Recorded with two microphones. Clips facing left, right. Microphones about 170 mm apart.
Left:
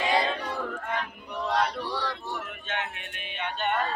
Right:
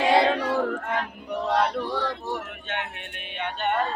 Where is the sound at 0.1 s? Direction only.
70° right (ahead or behind).